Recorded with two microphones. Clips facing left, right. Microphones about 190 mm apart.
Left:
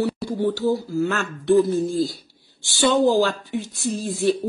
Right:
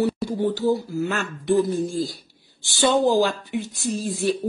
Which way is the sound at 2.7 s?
20° right (ahead or behind).